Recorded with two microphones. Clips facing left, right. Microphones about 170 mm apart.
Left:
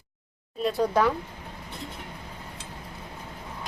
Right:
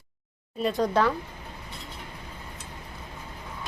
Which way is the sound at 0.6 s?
10° left (ahead or behind).